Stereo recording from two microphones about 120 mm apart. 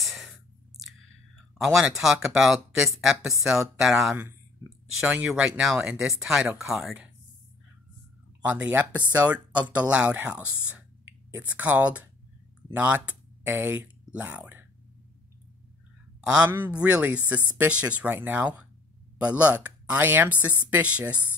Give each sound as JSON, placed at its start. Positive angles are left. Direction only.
{"t": 0.0, "sound": "a sound", "side_deg": 0}
{"t": 1.6, "sound": "speech", "side_deg": -5}
{"t": 8.4, "sound": "speech", "side_deg": -15}
{"t": 16.2, "sound": "speech", "side_deg": -10}